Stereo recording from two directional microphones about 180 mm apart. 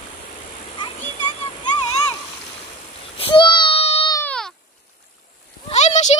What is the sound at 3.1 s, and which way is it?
Baby cry, 30° left (ahead or behind).